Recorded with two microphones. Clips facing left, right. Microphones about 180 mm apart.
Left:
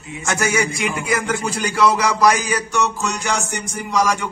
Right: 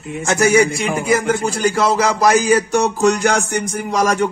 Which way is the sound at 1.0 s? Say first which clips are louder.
Right 8 dB; 40° right (ahead or behind).